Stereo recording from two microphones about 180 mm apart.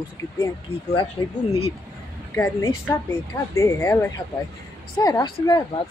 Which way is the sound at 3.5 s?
15° left (ahead or behind).